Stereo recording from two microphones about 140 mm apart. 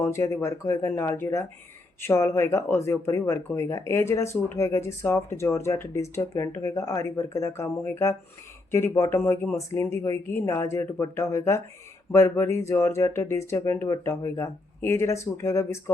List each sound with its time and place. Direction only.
0.0 s speech: 15° left (ahead or behind)